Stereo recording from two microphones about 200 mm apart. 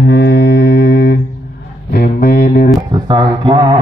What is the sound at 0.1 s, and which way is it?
Mantra, 60° left (ahead or behind).